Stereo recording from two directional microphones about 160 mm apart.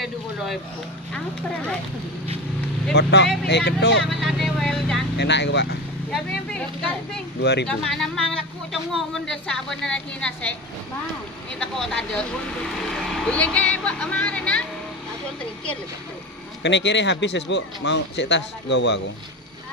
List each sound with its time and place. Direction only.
0.0 s vehicle: centre (ahead or behind)
1.1 s a woman's voice: 5° left (ahead or behind)
2.9 s a man's voice: 90° left
4.0 s a woman's voice: centre (ahead or behind)
5.1 s a man's voice: 90° left
7.3 s a man's voice: 90° left
7.6 s a woman's voice: 5° left (ahead or behind)
11.6 s a woman's voice: 5° left (ahead or behind)
16.6 s a man's voice: 90° left